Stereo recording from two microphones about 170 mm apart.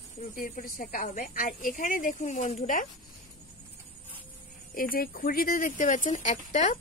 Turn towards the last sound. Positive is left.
turn(degrees=45)  # may be behind; listen again after turning